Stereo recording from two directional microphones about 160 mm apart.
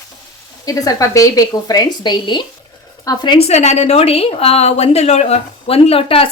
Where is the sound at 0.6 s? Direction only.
20° left (ahead or behind).